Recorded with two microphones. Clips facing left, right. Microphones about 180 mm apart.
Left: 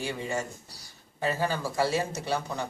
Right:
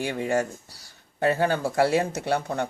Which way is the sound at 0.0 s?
60° right (ahead or behind).